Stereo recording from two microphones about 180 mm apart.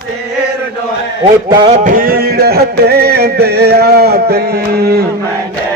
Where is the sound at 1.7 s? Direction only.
50° right (ahead or behind).